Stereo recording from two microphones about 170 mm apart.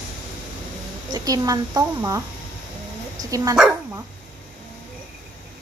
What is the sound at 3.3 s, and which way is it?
Speech, 20° right (ahead or behind).